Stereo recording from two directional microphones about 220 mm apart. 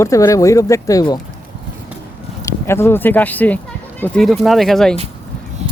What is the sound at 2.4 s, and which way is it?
Speech, 10° left (ahead or behind).